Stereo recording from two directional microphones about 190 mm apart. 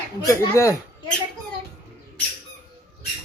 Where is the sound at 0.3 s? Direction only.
15° left (ahead or behind).